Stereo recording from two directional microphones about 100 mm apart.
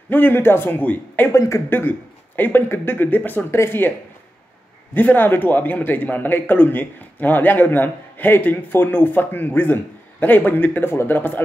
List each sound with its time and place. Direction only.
0.1 s a man's voice: 20° left (ahead or behind)
4.9 s a man's voice: 20° left (ahead or behind)